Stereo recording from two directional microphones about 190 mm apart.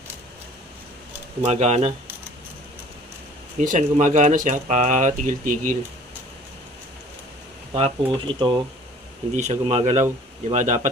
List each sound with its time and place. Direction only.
1.5 s speech: 35° right (ahead or behind)
3.6 s speech: 40° right (ahead or behind)
7.7 s speech: 30° right (ahead or behind)
9.3 s speech: 35° right (ahead or behind)